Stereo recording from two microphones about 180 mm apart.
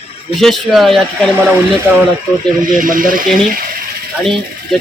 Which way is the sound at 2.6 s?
50° right (ahead or behind).